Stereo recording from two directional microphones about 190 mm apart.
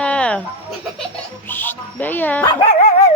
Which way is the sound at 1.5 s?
10° left (ahead or behind).